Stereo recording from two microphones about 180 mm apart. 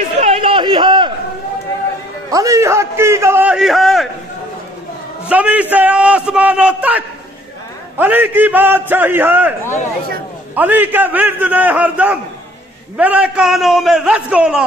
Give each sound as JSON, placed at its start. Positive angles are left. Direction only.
{"t": 0.2, "sound": "a sound", "side_deg": -30}
{"t": 2.3, "sound": "a man's voice", "side_deg": -20}
{"t": 5.3, "sound": "a man's voice", "side_deg": -10}